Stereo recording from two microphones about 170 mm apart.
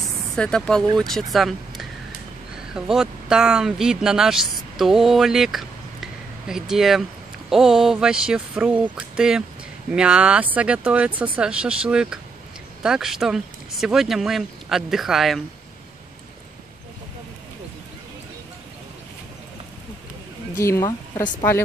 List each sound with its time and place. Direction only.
0.0 s a sound: 5° left (ahead or behind)
0.9 s speech: centre (ahead or behind)
20.5 s speech: 15° left (ahead or behind)